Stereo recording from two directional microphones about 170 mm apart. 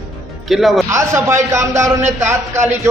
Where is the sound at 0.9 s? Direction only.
15° right (ahead or behind).